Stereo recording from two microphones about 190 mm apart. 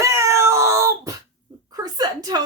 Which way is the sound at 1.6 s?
20° right (ahead or behind).